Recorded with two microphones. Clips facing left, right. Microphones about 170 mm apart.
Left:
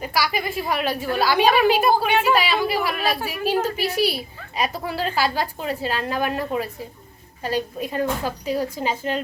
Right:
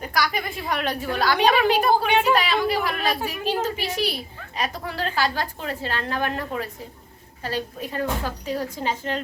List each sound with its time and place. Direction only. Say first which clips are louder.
0.0 s a woman's voice: left 2 dB; 5° left (ahead or behind)